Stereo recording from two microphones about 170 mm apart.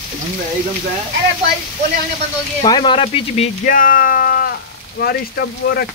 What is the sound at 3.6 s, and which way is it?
Speech, 55° left (ahead or behind).